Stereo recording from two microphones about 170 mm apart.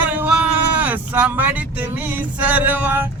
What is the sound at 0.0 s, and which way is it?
Speech, 10° right (ahead or behind).